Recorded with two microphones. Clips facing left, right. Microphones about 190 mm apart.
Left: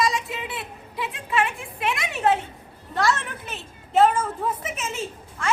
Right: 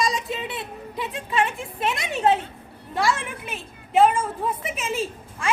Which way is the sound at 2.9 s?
15° right (ahead or behind).